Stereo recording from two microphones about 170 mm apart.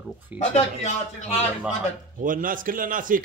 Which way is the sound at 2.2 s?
55° right (ahead or behind).